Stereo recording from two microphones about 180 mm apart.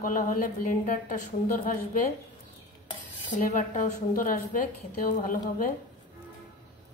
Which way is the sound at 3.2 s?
45° left (ahead or behind).